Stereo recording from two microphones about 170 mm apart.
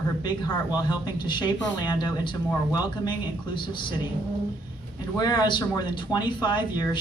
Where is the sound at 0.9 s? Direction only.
25° left (ahead or behind).